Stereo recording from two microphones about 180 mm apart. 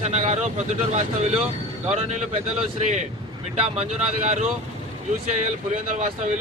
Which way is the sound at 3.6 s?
35° right (ahead or behind).